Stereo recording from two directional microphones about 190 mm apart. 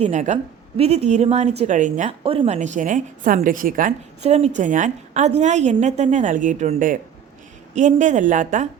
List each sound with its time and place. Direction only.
0.0 s a woman's voice: 40° right (ahead or behind)